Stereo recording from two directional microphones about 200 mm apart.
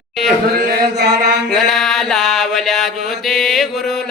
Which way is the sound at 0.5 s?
50° right (ahead or behind).